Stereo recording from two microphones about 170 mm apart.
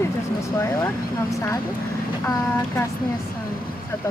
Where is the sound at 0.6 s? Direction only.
15° left (ahead or behind).